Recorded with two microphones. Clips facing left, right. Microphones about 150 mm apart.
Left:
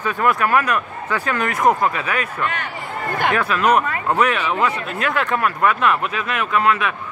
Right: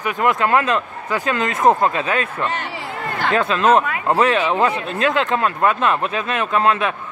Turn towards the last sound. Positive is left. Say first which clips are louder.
# right 1 dB
turn(degrees=-30)  # may be behind; listen again after turning